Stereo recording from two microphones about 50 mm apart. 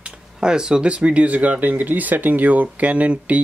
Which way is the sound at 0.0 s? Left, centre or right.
Centre.